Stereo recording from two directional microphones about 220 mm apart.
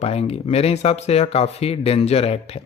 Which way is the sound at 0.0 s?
30° left (ahead or behind).